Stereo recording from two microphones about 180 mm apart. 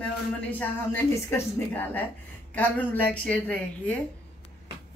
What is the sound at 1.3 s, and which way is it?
A woman's voice, 10° left (ahead or behind).